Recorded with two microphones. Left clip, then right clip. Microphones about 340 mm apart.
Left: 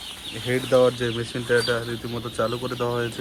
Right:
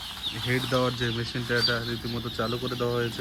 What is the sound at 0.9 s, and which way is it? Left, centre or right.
Speech, left.